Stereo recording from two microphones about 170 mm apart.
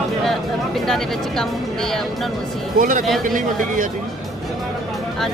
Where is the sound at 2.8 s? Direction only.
50° right (ahead or behind).